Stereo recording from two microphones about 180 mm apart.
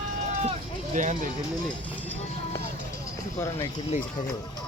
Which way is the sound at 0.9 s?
45° right (ahead or behind).